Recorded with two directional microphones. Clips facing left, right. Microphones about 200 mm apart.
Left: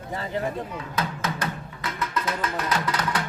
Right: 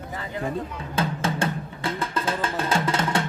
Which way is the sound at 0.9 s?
30° right (ahead or behind).